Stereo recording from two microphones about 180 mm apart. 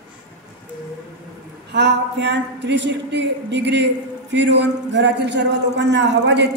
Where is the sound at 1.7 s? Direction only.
75° right (ahead or behind).